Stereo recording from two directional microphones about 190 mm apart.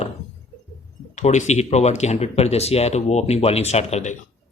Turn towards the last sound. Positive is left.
turn(degrees=35)  # may be behind; listen again after turning